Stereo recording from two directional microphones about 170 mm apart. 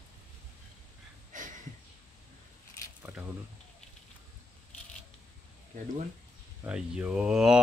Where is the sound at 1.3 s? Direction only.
50° right (ahead or behind).